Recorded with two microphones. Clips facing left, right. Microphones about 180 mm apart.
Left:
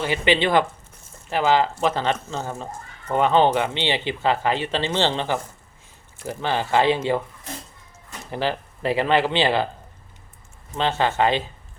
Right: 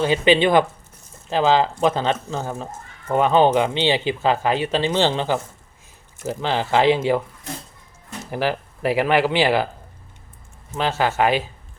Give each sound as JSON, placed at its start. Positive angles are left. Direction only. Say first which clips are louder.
{"t": 0.0, "sound": "speech", "louder": "right 4 dB", "side_deg": -15}
{"t": 8.3, "sound": "speech", "louder": "right 2 dB", "side_deg": -10}
{"t": 10.8, "sound": "speech", "louder": "right 1 dB", "side_deg": -10}